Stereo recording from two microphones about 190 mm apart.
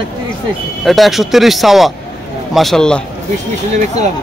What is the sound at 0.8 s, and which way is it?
Speech, centre (ahead or behind).